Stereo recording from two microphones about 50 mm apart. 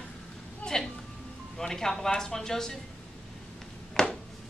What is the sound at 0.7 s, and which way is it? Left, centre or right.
Music, centre.